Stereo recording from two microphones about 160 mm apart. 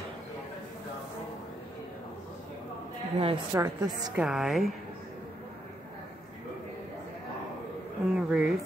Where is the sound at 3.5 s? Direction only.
25° right (ahead or behind).